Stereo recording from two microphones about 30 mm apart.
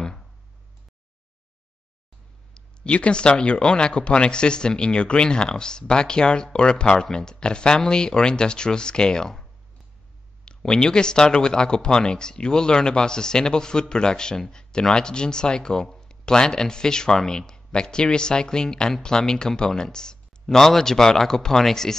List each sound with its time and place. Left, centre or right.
2.5 s speech: left
10.4 s speech: left
20.4 s speech: centre